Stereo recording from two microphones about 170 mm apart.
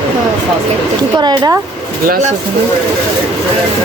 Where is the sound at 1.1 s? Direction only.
25° right (ahead or behind).